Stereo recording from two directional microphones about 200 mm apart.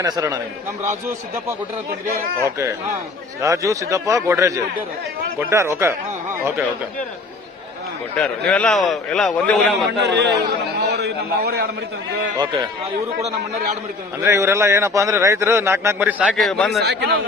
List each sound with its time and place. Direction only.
0.0 s a man's voice: 20° right (ahead or behind)
2.4 s a man's voice: 15° right (ahead or behind)
8.1 s a man's voice: 5° left (ahead or behind)
10.0 s a man's voice: 60° right (ahead or behind)
14.3 s a man's voice: 15° right (ahead or behind)
16.8 s a man's voice: 55° right (ahead or behind)